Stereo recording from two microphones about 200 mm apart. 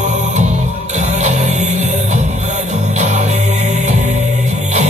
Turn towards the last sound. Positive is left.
turn(degrees=-35)  # may be behind; listen again after turning